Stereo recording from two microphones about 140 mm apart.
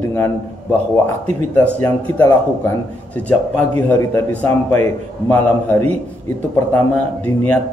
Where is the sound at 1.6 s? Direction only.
10° left (ahead or behind).